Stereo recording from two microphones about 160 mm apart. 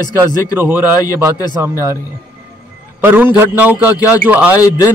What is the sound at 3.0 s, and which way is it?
A man's voice, 15° right (ahead or behind).